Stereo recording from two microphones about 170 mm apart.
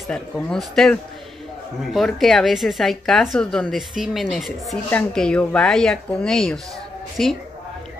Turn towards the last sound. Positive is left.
turn(degrees=5)  # may be behind; listen again after turning